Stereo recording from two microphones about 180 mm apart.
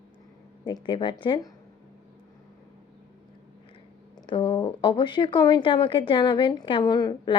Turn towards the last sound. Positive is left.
turn(degrees=25)  # may be behind; listen again after turning